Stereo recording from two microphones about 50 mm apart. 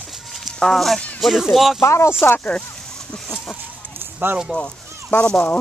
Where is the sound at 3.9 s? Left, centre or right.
Right.